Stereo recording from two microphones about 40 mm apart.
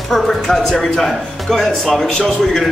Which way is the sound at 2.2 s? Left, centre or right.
Centre.